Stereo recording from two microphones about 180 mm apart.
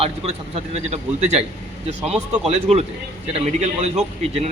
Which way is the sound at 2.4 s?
35° right (ahead or behind).